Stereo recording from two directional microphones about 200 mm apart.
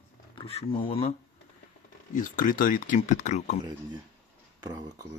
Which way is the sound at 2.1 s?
40° left (ahead or behind).